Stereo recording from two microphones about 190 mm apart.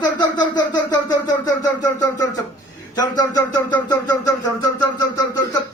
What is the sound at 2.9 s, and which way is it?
Speech, 20° left (ahead or behind).